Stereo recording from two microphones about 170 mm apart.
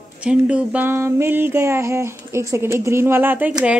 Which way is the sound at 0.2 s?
5° right (ahead or behind).